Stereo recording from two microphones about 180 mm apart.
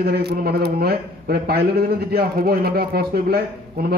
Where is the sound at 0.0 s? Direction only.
60° right (ahead or behind).